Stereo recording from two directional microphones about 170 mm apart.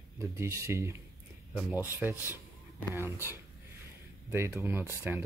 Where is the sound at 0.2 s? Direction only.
15° right (ahead or behind).